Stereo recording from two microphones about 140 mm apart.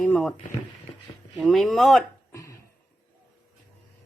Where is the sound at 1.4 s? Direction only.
Centre (ahead or behind).